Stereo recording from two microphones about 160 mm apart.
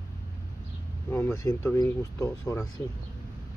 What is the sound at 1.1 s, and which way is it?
Speech, 15° left (ahead or behind).